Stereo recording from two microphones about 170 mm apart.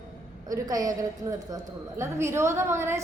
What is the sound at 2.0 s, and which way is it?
A woman's voice, 15° right (ahead or behind).